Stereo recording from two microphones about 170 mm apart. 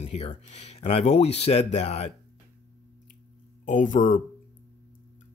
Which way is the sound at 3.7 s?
50° left (ahead or behind).